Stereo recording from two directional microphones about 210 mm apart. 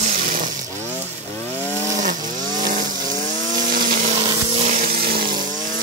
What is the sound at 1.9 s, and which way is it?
Chainsaw, 35° right (ahead or behind).